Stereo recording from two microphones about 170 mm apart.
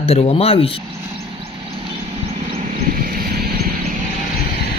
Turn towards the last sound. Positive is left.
turn(degrees=-65)  # may be behind; listen again after turning